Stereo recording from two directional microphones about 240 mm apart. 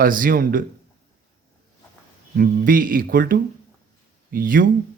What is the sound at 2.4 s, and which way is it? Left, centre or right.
A man's voice, right.